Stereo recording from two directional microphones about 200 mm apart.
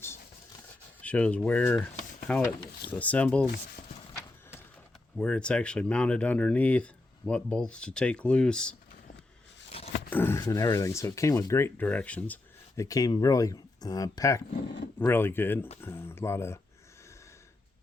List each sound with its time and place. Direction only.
1.0 s speech: 5° left (ahead or behind)
5.1 s speech: 5° left (ahead or behind)
9.7 s a sound: 30° left (ahead or behind)
10.1 s speech: 10° left (ahead or behind)